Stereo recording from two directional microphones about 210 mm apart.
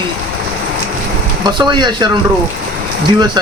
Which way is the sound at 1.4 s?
20° right (ahead or behind).